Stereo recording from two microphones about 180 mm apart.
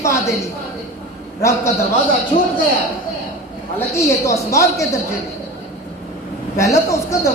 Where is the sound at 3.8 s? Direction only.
15° left (ahead or behind).